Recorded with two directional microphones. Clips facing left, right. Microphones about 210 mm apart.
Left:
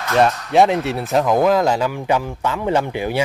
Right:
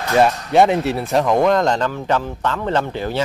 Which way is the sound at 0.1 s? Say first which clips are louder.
Right 1 dB; centre (ahead or behind).